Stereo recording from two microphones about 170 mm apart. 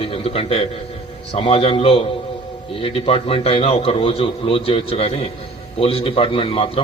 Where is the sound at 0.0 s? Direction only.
30° left (ahead or behind).